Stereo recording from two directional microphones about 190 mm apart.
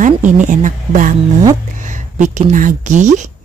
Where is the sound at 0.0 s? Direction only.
40° right (ahead or behind).